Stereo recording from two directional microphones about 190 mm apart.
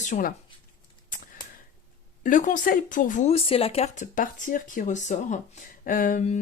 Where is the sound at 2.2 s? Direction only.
45° left (ahead or behind).